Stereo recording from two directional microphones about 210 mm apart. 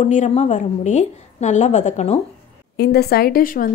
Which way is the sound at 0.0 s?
35° left (ahead or behind).